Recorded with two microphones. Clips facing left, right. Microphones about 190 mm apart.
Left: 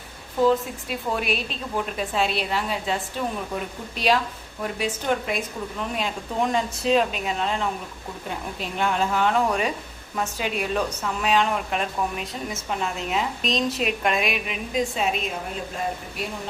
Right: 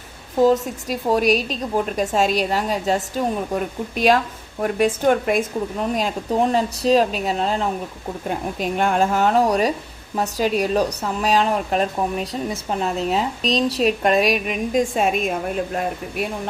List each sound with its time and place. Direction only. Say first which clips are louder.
0.4 s speech: right 4 dB; 40° right (ahead or behind)
8.3 s speech: right 8 dB; 50° right (ahead or behind)